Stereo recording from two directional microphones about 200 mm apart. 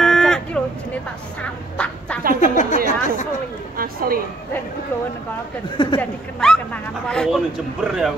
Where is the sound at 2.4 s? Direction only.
40° left (ahead or behind).